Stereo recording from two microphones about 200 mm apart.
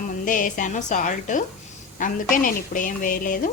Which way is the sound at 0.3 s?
40° left (ahead or behind).